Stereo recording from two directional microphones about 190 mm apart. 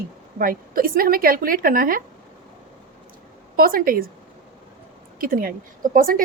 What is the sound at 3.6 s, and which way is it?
Speech, 50° right (ahead or behind).